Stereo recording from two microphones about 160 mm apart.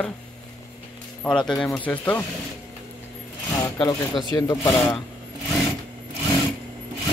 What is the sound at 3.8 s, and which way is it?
Speech, 30° left (ahead or behind).